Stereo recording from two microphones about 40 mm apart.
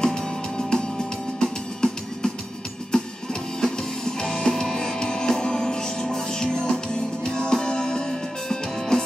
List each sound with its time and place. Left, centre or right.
0.0 s music: centre